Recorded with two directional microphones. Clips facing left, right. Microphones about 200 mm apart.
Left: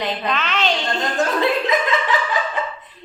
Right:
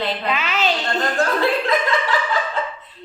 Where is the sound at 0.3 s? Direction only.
10° right (ahead or behind).